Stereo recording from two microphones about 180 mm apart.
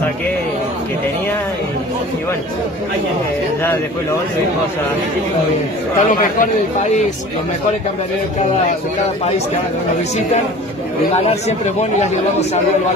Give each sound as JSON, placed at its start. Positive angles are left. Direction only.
{"t": 5.9, "sound": "speech", "side_deg": 40}
{"t": 11.2, "sound": "speech", "side_deg": 40}